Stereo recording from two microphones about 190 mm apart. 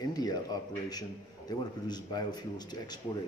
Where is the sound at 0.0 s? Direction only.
20° left (ahead or behind).